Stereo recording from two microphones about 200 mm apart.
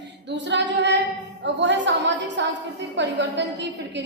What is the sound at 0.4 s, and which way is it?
Female singing, 60° right (ahead or behind).